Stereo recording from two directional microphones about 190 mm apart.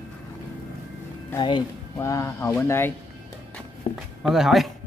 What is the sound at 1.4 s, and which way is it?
Speech, 20° left (ahead or behind).